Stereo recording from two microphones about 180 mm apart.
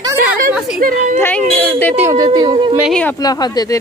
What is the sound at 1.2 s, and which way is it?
Speech, 10° left (ahead or behind).